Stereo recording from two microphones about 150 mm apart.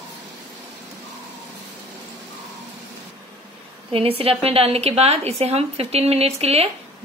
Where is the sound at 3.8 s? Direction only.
40° right (ahead or behind).